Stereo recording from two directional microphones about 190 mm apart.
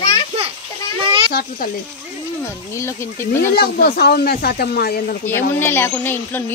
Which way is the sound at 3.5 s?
50° left (ahead or behind).